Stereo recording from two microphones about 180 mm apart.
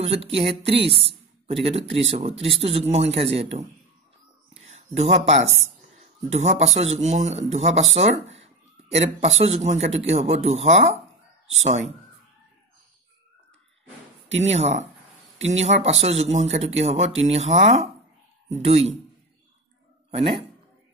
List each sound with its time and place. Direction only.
0.0 s a man's voice: 35° right (ahead or behind)
4.9 s a man's voice: 35° right (ahead or behind)
14.5 s a man's voice: 40° right (ahead or behind)
15.3 s a sound: 90° right
15.6 s a man's voice: 35° right (ahead or behind)
20.1 s speech: 30° right (ahead or behind)